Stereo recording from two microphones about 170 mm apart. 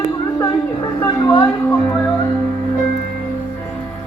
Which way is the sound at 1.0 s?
25° left (ahead or behind).